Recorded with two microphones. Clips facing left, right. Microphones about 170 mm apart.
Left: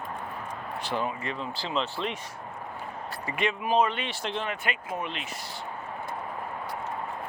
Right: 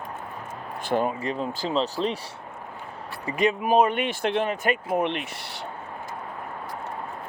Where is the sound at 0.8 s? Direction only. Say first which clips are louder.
Right 7 dB; 50° right (ahead or behind).